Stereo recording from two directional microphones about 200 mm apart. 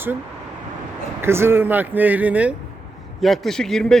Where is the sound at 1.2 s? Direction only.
10° right (ahead or behind).